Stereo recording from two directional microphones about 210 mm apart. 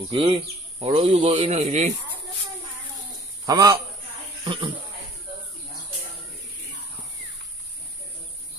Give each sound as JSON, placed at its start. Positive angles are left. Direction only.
{"t": 0.1, "sound": "speech", "side_deg": -25}
{"t": 3.4, "sound": "a man's voice", "side_deg": -20}